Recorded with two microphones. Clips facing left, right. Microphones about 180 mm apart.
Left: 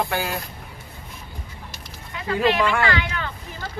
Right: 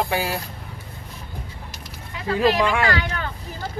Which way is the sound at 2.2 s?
35° right (ahead or behind).